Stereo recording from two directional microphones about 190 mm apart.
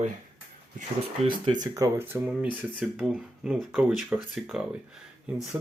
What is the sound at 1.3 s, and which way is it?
Speech, 25° right (ahead or behind).